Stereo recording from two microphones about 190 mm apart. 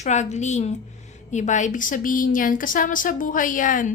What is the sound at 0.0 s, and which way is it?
A woman's voice, 40° left (ahead or behind).